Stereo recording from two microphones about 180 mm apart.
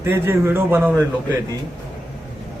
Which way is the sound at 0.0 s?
15° right (ahead or behind).